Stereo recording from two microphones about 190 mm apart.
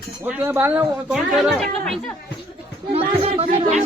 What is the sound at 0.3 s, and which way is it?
Speech, 10° right (ahead or behind).